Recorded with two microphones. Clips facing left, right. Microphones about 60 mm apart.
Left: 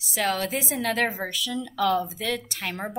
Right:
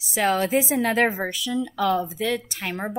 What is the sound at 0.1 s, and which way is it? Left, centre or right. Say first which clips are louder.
A woman's voice: right 5 dB; centre.